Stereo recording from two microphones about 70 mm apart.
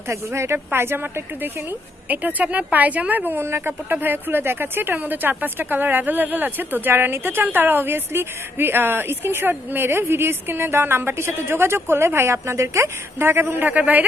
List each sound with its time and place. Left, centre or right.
0.1 s a woman's voice: right